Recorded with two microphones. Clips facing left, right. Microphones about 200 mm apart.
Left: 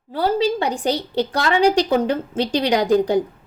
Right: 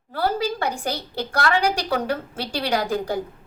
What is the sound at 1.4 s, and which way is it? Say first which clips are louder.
A woman's voice: left 5 dB; 20° left (ahead or behind).